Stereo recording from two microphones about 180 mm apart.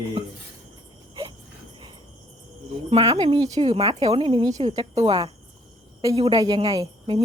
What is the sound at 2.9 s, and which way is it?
A woman's voice, 35° right (ahead or behind).